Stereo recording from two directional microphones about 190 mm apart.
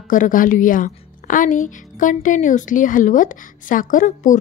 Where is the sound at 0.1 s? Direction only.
45° left (ahead or behind).